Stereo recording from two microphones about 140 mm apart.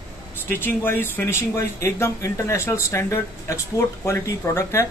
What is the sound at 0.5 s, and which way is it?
A man's voice, 15° left (ahead or behind).